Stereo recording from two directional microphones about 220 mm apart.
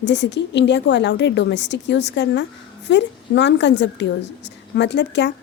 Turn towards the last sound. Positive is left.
turn(degrees=50)  # may be behind; listen again after turning